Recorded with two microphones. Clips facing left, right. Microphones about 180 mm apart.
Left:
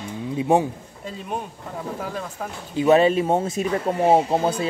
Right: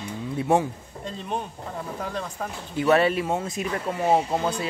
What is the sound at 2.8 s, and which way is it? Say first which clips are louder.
Speech: left 4 dB; 20° left (ahead or behind).